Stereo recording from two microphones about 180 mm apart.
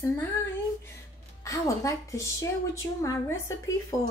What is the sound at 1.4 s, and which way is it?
A woman's voice, 15° left (ahead or behind).